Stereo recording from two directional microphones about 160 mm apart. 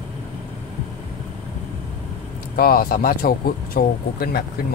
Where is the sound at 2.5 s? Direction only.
65° left (ahead or behind).